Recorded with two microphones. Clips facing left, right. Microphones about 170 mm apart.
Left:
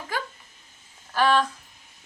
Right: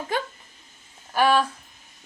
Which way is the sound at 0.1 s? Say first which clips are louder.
Right 4 dB; 25° right (ahead or behind).